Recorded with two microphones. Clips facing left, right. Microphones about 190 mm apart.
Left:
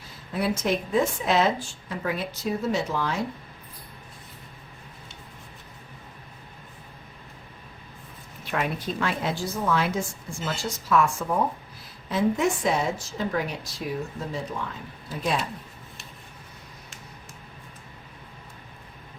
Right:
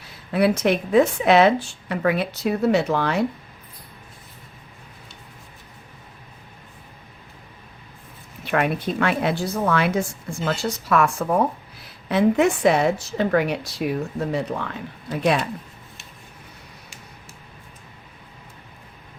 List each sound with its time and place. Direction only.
0.3 s a woman's voice: 70° right (ahead or behind)
8.4 s a woman's voice: 65° right (ahead or behind)